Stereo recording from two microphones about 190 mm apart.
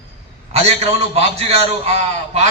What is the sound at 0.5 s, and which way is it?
A man's voice, 35° right (ahead or behind).